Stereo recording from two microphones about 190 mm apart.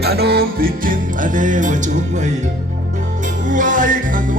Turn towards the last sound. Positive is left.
turn(degrees=-45)  # may be behind; listen again after turning